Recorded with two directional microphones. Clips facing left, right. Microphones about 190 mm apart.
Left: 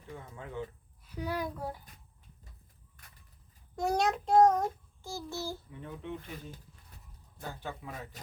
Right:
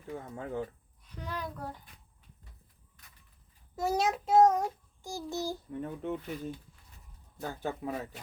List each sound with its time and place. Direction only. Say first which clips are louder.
0.1 s speech: right 5 dB; 45° right (ahead or behind)
1.0 s a child's voice: left 4 dB; 10° left (ahead or behind)
3.8 s child singing: even; 5° right (ahead or behind)
5.7 s speech: right 6 dB; 45° right (ahead or behind)
7.6 s speech: right 10 dB; 45° right (ahead or behind)